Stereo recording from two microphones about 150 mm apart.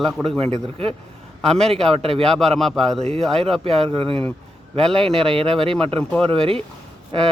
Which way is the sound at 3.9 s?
35° right (ahead or behind).